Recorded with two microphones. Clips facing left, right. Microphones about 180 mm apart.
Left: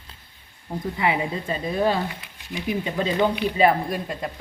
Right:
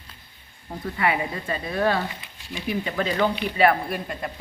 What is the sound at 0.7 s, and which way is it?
A woman's voice, 20° left (ahead or behind).